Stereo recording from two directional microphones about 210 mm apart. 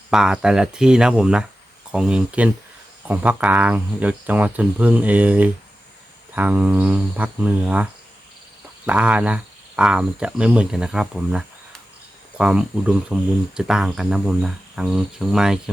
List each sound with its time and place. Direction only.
0.1 s speech: 5° right (ahead or behind)
8.9 s speech: 5° right (ahead or behind)